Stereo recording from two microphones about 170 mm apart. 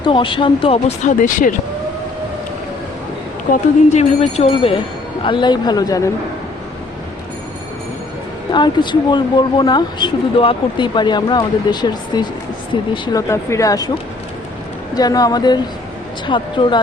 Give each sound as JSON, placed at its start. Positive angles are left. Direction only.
{"t": 0.0, "sound": "speech", "side_deg": 30}
{"t": 3.5, "sound": "speech", "side_deg": 40}
{"t": 8.5, "sound": "speech", "side_deg": 25}
{"t": 14.9, "sound": "speech", "side_deg": 20}